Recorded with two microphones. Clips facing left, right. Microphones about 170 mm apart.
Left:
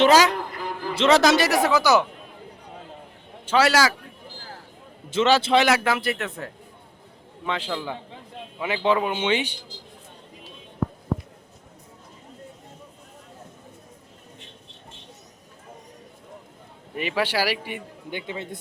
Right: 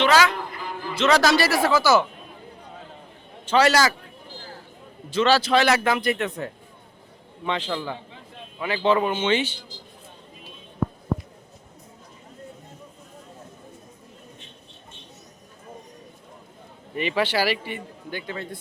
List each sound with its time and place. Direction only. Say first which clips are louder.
0.0 s a sound: left 3 dB; 40° left (ahead or behind)
0.9 s speech: left 1 dB; 25° left (ahead or behind)
3.4 s a man's voice: right 1 dB; 10° left (ahead or behind)
5.1 s speech: even; 20° left (ahead or behind)
5.6 s speech: right 1 dB; 10° left (ahead or behind)
7.4 s a man's voice: right 1 dB; 5° left (ahead or behind)
16.9 s a man's voice: right 1 dB; 5° left (ahead or behind)